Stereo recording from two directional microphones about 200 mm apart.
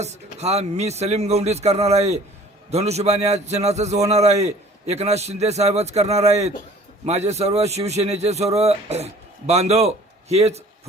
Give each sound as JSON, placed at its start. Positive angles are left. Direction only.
{"t": 0.0, "sound": "a man's voice", "side_deg": -35}